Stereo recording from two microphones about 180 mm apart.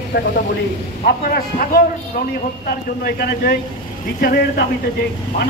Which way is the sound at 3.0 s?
60° left (ahead or behind).